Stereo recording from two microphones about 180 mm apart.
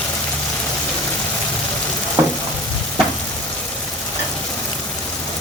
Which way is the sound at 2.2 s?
15° right (ahead or behind).